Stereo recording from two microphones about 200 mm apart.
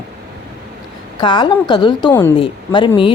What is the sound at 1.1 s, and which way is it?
Speech, 20° left (ahead or behind).